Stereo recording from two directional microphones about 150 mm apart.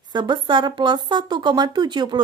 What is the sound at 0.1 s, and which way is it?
A woman's voice, 30° right (ahead or behind).